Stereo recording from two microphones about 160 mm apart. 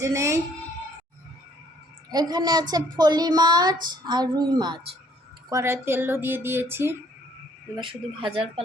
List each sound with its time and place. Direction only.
0.0 s a woman's voice: 20° right (ahead or behind)
2.0 s a woman's voice: 25° right (ahead or behind)
7.8 s speech: 30° right (ahead or behind)